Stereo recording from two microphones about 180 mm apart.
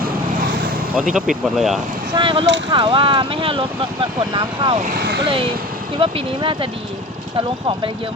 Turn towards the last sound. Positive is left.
turn(degrees=-30)  # may be behind; listen again after turning